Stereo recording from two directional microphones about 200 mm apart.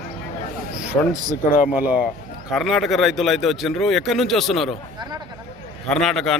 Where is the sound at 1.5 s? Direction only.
45° left (ahead or behind).